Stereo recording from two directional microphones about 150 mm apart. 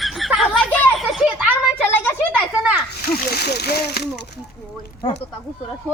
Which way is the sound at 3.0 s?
90° left.